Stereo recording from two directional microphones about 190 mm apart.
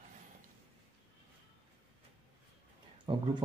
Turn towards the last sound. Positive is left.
turn(degrees=-25)  # may be behind; listen again after turning